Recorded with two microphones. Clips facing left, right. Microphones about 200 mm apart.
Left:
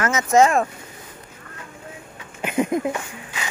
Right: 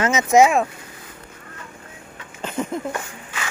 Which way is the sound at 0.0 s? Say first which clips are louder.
Right 2 dB; 15° right (ahead or behind).